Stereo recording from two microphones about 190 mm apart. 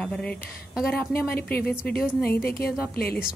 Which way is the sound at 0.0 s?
5° left (ahead or behind).